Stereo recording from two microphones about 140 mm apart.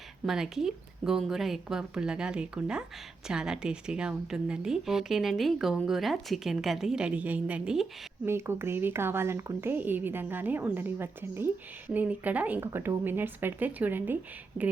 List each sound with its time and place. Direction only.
0.3 s a woman's voice: centre (ahead or behind)
8.2 s speech: 15° right (ahead or behind)